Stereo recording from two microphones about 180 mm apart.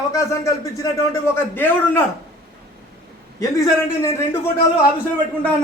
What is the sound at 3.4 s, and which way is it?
A man's voice, 20° left (ahead or behind).